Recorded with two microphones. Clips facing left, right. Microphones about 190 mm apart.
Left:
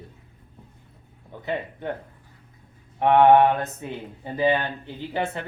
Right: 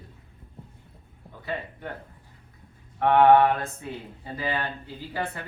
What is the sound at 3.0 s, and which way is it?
Speech, 20° left (ahead or behind).